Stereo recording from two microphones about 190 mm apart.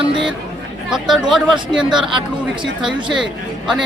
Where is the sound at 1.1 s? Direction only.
Centre (ahead or behind).